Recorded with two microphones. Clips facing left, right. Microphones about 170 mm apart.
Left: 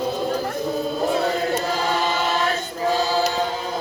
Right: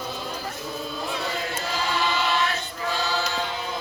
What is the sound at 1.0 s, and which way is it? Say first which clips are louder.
Choir: left 9 dB; 45° left (ahead or behind).